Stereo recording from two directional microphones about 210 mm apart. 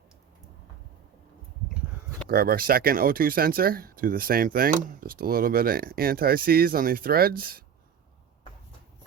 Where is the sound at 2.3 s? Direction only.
45° right (ahead or behind).